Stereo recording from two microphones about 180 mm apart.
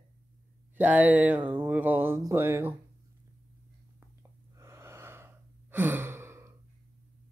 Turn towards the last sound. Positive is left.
turn(degrees=-15)  # may be behind; listen again after turning